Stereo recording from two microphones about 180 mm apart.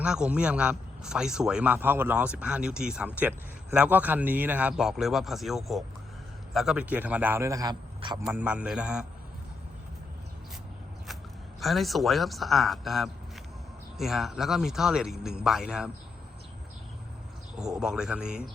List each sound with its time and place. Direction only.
0.0 s a man's voice: 5° right (ahead or behind); by 8.2 s 25° right (ahead or behind)
8.2 s a man's voice: 10° right (ahead or behind)
11.6 s a man's voice: centre (ahead or behind)
17.6 s a man's voice: 5° right (ahead or behind)